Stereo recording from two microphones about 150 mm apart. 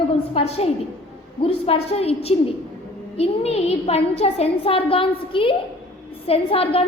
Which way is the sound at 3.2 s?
45° left (ahead or behind).